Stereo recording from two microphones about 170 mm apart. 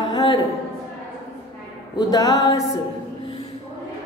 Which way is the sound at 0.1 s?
25° left (ahead or behind).